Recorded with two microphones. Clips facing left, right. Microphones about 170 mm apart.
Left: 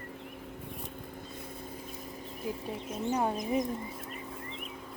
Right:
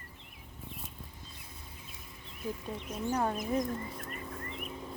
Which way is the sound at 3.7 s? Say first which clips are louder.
Left 1 dB; 5° left (ahead or behind).